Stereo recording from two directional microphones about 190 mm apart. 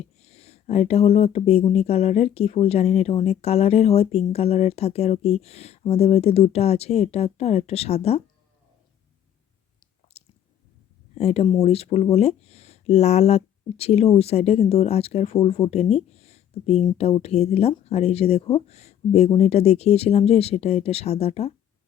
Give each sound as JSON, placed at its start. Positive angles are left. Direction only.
{"t": 0.0, "sound": "speech", "side_deg": 35}
{"t": 10.1, "sound": "squish", "side_deg": 35}
{"t": 11.1, "sound": "speech", "side_deg": 35}